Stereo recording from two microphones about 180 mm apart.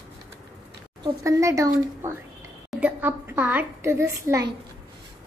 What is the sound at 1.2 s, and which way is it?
A woman's voice, 15° right (ahead or behind).